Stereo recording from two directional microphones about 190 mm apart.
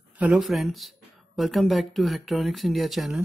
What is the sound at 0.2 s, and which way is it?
Speech, 5° right (ahead or behind).